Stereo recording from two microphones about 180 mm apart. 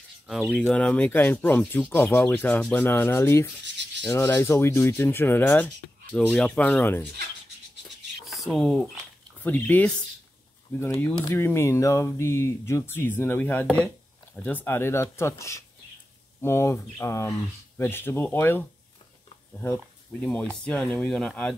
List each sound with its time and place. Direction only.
0.3 s speech: centre (ahead or behind)
8.3 s speech: centre (ahead or behind)
19.6 s speech: 10° left (ahead or behind)